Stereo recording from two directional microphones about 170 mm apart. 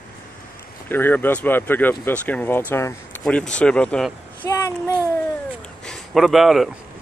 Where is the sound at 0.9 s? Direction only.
10° left (ahead or behind).